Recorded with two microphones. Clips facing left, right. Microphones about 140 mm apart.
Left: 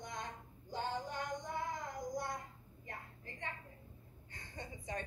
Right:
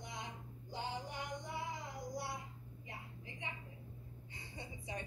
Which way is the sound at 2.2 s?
50° left (ahead or behind).